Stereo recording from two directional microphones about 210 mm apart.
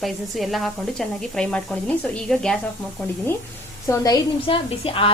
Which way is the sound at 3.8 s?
15° left (ahead or behind).